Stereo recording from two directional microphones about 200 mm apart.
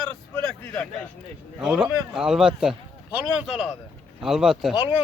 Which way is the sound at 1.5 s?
5° right (ahead or behind).